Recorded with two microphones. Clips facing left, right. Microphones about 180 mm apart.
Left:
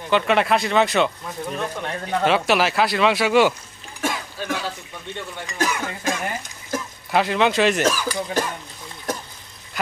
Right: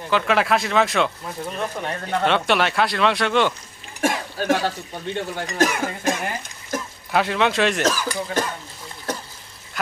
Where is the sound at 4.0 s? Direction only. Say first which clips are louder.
Right 4 dB; 50° right (ahead or behind).